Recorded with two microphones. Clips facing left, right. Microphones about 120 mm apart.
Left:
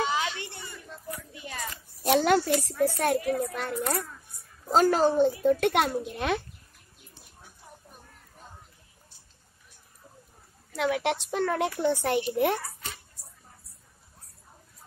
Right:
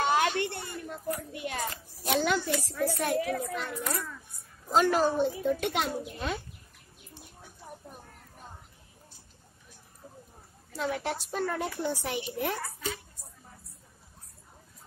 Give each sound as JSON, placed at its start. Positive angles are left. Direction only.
{"t": 0.0, "sound": "a sound", "side_deg": -55}
{"t": 2.0, "sound": "a woman's voice", "side_deg": 55}
{"t": 10.8, "sound": "a child's voice", "side_deg": 80}
{"t": 11.2, "sound": "a woman's voice", "side_deg": 70}